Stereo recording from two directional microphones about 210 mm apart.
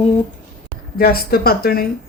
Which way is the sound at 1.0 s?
45° left (ahead or behind).